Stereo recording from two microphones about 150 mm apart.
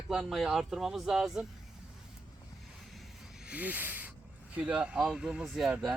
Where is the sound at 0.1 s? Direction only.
5° right (ahead or behind).